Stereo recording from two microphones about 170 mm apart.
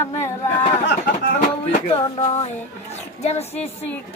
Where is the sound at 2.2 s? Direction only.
40° left (ahead or behind).